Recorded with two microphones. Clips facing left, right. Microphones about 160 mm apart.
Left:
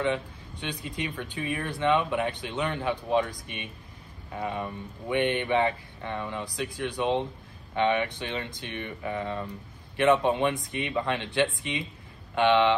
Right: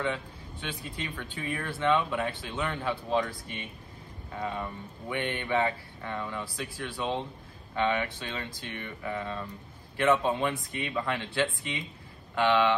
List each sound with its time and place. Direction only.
0.0 s speech: 20° left (ahead or behind)